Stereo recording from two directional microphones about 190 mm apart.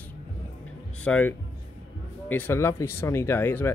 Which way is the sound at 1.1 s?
10° left (ahead or behind).